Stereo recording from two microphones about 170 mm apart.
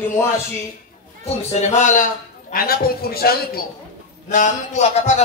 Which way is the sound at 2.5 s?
60° left (ahead or behind).